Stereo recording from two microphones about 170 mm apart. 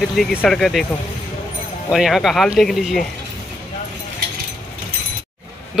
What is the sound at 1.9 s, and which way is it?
A man's voice, centre (ahead or behind).